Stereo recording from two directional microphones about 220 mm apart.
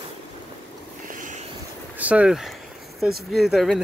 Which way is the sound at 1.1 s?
35° right (ahead or behind).